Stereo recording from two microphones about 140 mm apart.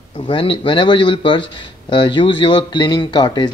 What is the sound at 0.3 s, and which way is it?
Speech, 35° left (ahead or behind).